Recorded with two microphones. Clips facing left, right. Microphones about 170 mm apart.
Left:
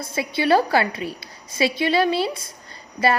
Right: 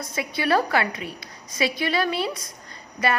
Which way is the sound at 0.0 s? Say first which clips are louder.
Left 4 dB; 30° left (ahead or behind).